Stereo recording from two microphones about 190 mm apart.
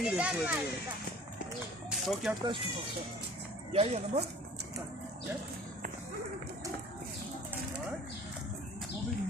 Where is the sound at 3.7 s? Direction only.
35° right (ahead or behind).